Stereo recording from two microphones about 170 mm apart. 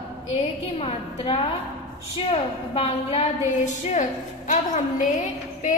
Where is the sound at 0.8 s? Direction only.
35° left (ahead or behind).